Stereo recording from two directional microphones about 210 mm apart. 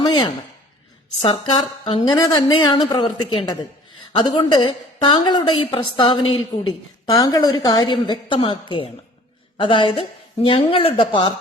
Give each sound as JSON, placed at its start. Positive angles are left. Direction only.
{"t": 0.0, "sound": "a woman's voice", "side_deg": 20}
{"t": 1.8, "sound": "a woman's voice", "side_deg": 25}